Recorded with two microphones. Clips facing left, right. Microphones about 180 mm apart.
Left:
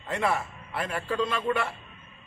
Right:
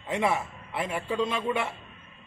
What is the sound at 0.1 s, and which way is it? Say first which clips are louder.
A man's voice: right 1 dB; 20° right (ahead or behind).